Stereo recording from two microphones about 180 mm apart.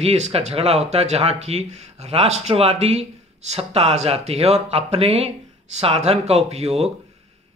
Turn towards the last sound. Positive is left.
turn(degrees=-35)  # may be behind; listen again after turning